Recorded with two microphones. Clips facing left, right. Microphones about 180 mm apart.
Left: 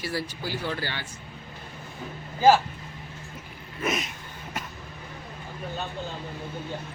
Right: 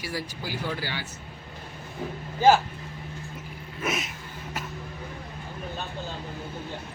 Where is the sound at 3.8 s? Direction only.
5° right (ahead or behind).